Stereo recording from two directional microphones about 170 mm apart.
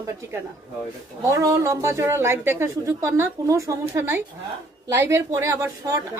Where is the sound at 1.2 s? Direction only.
20° right (ahead or behind).